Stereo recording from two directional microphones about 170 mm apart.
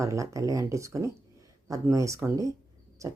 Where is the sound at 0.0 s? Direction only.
20° right (ahead or behind).